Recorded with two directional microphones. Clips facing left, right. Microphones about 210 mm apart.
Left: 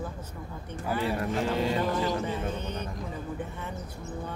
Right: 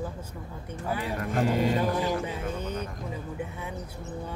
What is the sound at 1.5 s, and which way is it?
Speech, 10° right (ahead or behind).